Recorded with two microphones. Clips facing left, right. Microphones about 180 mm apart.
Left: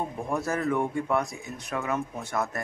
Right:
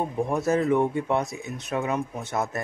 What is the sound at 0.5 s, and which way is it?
Speech, 20° right (ahead or behind).